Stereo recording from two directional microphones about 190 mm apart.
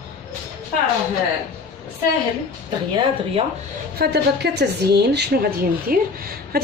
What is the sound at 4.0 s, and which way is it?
Speech, 60° right (ahead or behind).